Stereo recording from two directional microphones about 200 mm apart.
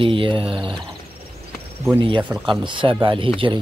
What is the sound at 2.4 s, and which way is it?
Speech, 25° right (ahead or behind).